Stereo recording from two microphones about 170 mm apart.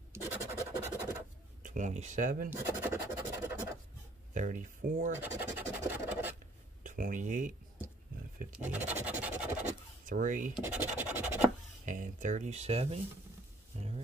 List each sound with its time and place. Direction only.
0.1 s scratch: 15° right (ahead or behind)
1.6 s speech: 50° right (ahead or behind)
2.5 s scratch: 15° right (ahead or behind)
4.3 s speech: 50° right (ahead or behind)
5.7 s scratch: 10° right (ahead or behind)
6.8 s speech: 50° right (ahead or behind)
8.5 s scratch: 10° right (ahead or behind)
10.0 s speech: 50° right (ahead or behind)
10.6 s scratch: 10° right (ahead or behind)
11.8 s speech: 50° right (ahead or behind)
13.7 s a sound: 40° right (ahead or behind)